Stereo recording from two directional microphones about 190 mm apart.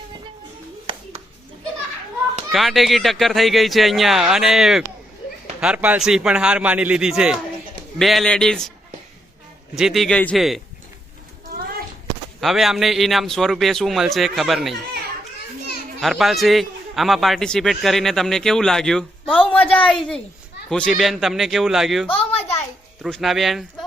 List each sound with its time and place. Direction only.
2.5 s a man's voice: centre (ahead or behind)
9.7 s a man's voice: centre (ahead or behind)
12.4 s a man's voice: centre (ahead or behind)
16.0 s a man's voice: centre (ahead or behind)
22.1 s a sound: 30° left (ahead or behind)
23.0 s a man's voice: centre (ahead or behind)